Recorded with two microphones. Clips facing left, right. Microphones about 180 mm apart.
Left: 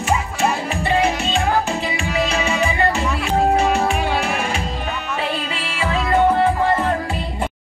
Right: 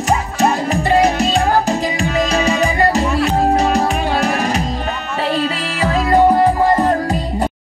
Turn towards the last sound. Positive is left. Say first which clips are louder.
# right 5 dB
turn(degrees=-40)  # may be behind; listen again after turning